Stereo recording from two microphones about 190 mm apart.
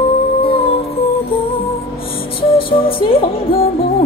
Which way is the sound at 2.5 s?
30° left (ahead or behind).